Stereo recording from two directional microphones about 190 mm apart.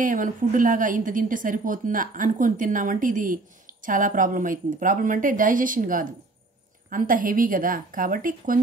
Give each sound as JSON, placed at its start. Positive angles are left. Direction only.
{"t": 0.0, "sound": "a woman's voice", "side_deg": -45}